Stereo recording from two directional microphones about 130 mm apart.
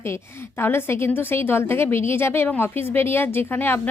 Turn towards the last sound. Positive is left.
turn(degrees=15)  # may be behind; listen again after turning